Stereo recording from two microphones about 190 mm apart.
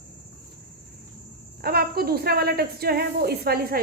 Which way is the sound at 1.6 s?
55° right (ahead or behind).